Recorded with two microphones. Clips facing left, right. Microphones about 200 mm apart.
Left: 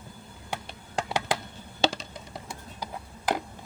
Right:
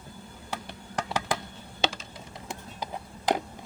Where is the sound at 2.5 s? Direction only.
20° right (ahead or behind).